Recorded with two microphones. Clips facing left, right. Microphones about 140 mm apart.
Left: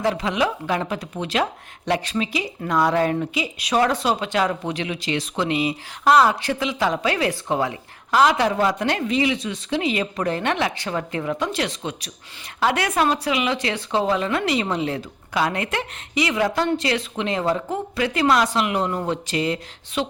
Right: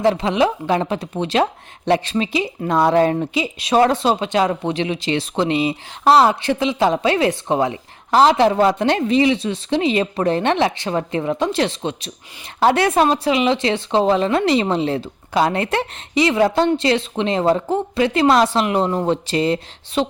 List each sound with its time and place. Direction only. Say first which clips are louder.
0.0 s speech: right 5 dB; 25° right (ahead or behind)